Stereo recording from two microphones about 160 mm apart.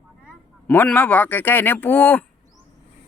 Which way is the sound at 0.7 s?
10° left (ahead or behind).